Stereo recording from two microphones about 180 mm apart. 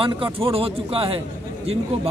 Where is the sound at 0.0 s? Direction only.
30° right (ahead or behind).